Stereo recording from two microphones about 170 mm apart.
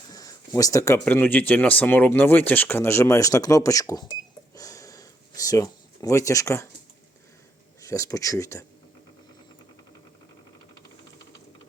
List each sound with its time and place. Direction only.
0.1 s speech: 20° left (ahead or behind)
4.5 s a sound: 20° left (ahead or behind)
7.8 s speech: 20° left (ahead or behind)